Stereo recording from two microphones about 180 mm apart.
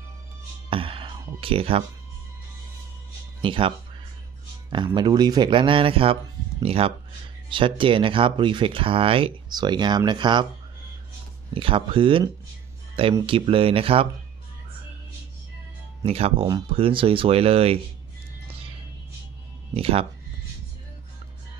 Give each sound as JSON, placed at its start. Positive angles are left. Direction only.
{"t": 0.7, "sound": "speech", "side_deg": -30}
{"t": 3.4, "sound": "speech", "side_deg": -30}
{"t": 11.5, "sound": "speech", "side_deg": -30}
{"t": 16.1, "sound": "speech", "side_deg": -35}
{"t": 19.7, "sound": "speech", "side_deg": -30}